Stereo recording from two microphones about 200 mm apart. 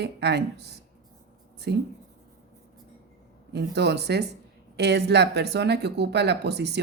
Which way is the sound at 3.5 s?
55° right (ahead or behind).